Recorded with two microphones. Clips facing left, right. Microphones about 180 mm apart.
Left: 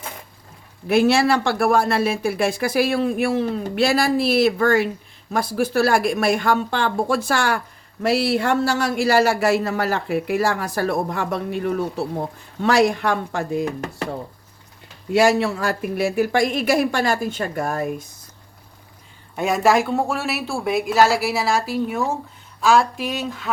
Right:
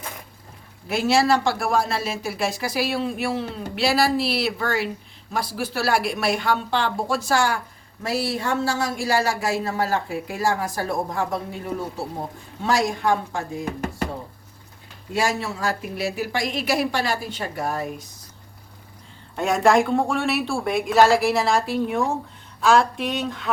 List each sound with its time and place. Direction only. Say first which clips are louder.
0.9 s speech: left 3 dB; 60° left (ahead or behind)
8.0 s speech: left 6 dB; 75° left (ahead or behind)
15.1 s speech: left 8 dB; 70° left (ahead or behind); by 17.8 s 50° left (ahead or behind)
19.4 s a woman's voice: even; 5° left (ahead or behind)